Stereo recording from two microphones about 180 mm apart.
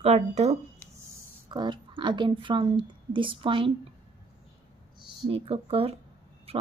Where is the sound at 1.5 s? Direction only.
25° right (ahead or behind).